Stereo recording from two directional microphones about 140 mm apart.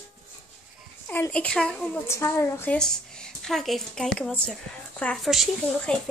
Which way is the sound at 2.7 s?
5° left (ahead or behind).